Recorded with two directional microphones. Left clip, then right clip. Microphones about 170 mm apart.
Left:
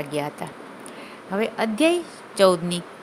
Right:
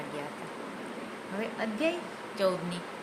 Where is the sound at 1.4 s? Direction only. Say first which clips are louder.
Left 11 dB; 80° left.